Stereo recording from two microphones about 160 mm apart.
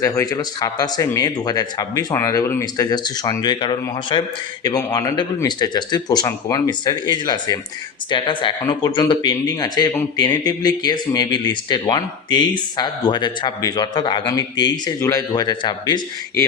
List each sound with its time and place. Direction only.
0.0 s speech: 20° left (ahead or behind)